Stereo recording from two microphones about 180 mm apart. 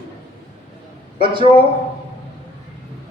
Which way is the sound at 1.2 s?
25° right (ahead or behind).